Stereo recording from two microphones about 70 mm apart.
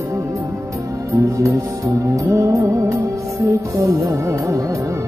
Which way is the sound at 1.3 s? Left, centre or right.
Right.